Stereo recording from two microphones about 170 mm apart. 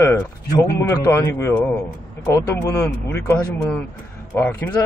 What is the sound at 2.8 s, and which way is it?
Speech, 15° left (ahead or behind).